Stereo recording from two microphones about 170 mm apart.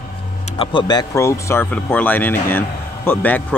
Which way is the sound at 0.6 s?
25° left (ahead or behind).